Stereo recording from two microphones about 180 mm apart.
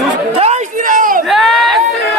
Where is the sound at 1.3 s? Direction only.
Centre (ahead or behind).